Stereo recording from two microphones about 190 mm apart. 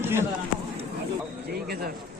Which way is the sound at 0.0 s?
10° right (ahead or behind).